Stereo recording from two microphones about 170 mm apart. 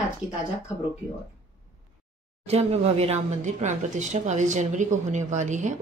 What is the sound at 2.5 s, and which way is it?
A woman's voice, 40° right (ahead or behind).